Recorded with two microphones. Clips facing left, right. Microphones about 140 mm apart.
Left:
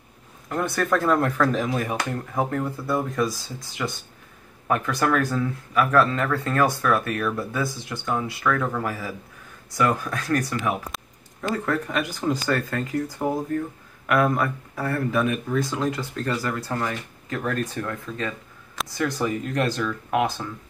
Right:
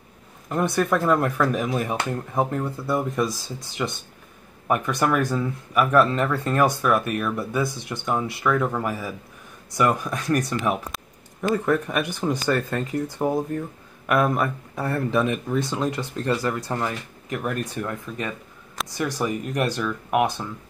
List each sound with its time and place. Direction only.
0.5 s speech: 15° right (ahead or behind)
10.9 s a sound: centre (ahead or behind)
11.5 s speech: 15° right (ahead or behind)